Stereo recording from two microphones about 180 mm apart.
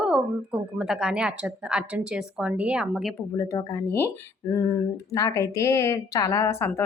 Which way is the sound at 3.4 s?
15° left (ahead or behind).